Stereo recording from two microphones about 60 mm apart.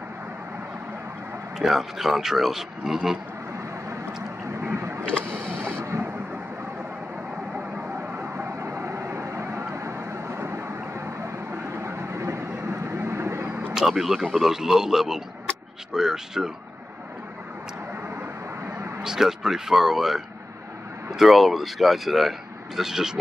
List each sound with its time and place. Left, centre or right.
1.6 s speech: centre
4.7 s vehicle: right
5.0 s vehicle: centre
5.7 s thunder: right
8.4 s vehicle: right
13.7 s a sound: centre
14.3 s speech: centre
19.0 s speech: centre
21.2 s speech: centre